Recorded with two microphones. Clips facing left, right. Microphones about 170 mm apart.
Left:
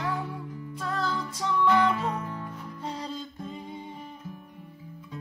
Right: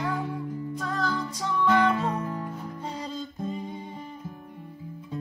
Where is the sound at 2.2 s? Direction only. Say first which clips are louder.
Right 4 dB; 40° right (ahead or behind).